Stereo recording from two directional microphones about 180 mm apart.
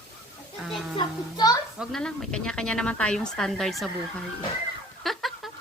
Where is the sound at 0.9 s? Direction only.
20° left (ahead or behind).